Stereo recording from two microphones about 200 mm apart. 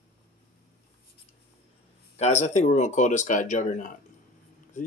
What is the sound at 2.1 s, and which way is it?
Speech, 35° left (ahead or behind).